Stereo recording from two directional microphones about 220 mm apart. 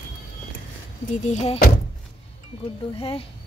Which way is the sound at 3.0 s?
25° left (ahead or behind).